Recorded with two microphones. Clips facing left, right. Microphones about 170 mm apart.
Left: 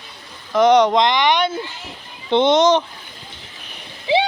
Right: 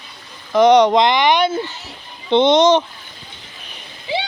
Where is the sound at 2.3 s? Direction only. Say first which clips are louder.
Right 2 dB; 5° left (ahead or behind).